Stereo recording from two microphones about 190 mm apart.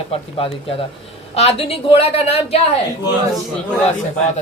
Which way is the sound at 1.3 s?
30° left (ahead or behind).